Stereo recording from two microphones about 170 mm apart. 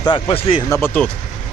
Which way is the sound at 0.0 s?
30° left (ahead or behind).